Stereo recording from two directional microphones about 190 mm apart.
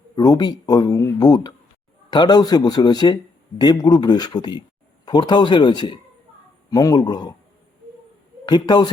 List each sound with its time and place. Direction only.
0.2 s speech: 20° left (ahead or behind)
8.4 s speech: 25° left (ahead or behind)